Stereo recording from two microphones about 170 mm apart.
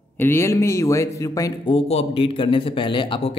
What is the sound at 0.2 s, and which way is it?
Speech, 15° left (ahead or behind).